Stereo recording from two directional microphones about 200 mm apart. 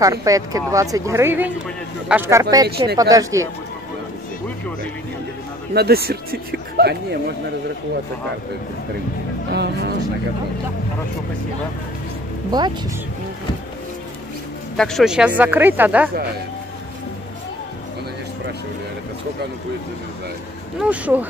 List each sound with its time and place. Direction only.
0.0 s a woman's voice: 15° right (ahead or behind)
5.7 s a man's voice: 50° right (ahead or behind)
9.5 s speech: 55° right (ahead or behind)
12.4 s speech: 20° right (ahead or behind)
14.8 s a woman's voice: centre (ahead or behind)
20.8 s a woman's voice: 5° right (ahead or behind)